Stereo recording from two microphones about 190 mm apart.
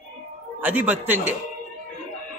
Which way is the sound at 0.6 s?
10° right (ahead or behind).